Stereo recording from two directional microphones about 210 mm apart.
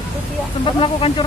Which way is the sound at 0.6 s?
25° left (ahead or behind).